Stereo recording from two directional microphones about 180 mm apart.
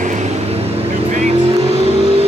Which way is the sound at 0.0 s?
40° right (ahead or behind).